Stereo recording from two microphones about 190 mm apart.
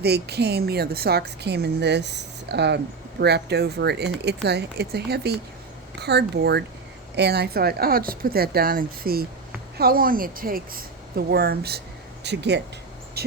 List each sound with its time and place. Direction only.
0.0 s a woman's voice: 60° right (ahead or behind)